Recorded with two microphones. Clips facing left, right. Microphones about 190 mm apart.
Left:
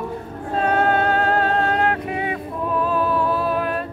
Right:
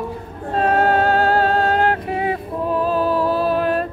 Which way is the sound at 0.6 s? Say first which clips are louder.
Right 3 dB; 35° right (ahead or behind).